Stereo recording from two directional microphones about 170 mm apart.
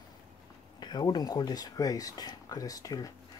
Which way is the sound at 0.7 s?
25° left (ahead or behind).